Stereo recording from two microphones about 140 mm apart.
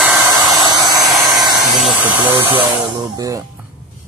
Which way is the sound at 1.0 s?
Centre (ahead or behind).